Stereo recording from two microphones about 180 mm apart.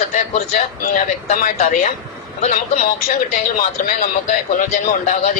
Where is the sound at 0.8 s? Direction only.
45° left (ahead or behind).